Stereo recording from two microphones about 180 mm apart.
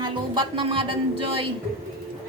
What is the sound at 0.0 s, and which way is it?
Speech, 30° right (ahead or behind).